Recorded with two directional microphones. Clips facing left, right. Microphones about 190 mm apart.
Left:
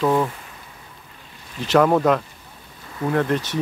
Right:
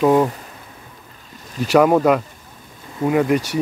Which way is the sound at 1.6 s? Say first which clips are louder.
Right 3 dB; 10° right (ahead or behind).